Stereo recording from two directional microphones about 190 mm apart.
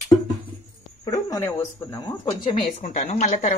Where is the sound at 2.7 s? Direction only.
40° left (ahead or behind).